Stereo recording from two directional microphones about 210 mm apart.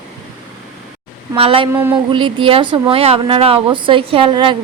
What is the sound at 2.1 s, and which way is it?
A woman's voice, 25° right (ahead or behind).